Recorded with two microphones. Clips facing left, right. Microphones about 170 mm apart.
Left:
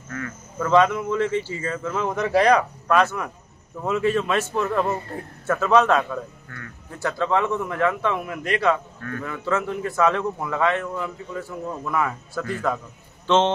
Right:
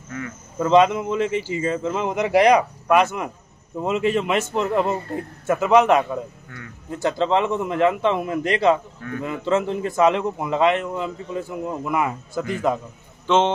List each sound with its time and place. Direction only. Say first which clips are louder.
0.1 s a man's voice: right 1 dB; 20° right (ahead or behind)